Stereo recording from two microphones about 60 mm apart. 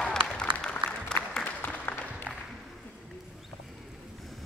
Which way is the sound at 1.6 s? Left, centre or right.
Left.